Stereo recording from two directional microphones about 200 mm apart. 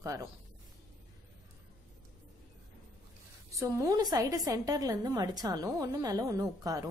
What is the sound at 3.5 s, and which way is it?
A woman's voice, 15° right (ahead or behind).